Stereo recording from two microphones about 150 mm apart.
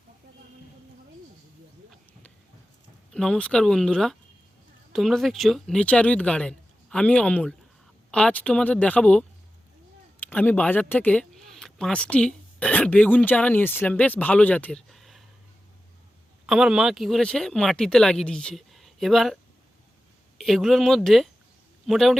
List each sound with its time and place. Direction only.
3.1 s speech: 5° left (ahead or behind)
16.5 s speech: 5° right (ahead or behind)
20.4 s speech: centre (ahead or behind)